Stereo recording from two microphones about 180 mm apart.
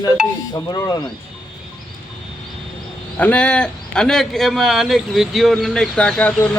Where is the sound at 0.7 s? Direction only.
20° left (ahead or behind).